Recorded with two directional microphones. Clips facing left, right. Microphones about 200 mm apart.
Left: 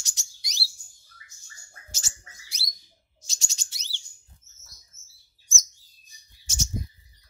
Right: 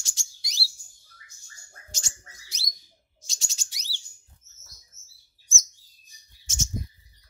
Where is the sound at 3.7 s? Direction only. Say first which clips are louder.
Right 1 dB; 10° right (ahead or behind).